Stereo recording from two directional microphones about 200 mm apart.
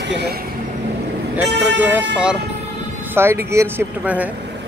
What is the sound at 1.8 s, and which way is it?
Speech, 10° right (ahead or behind).